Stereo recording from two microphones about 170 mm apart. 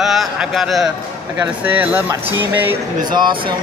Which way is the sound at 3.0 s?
25° right (ahead or behind).